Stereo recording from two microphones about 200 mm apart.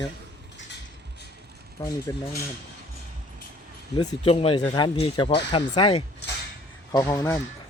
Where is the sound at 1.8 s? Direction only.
15° left (ahead or behind).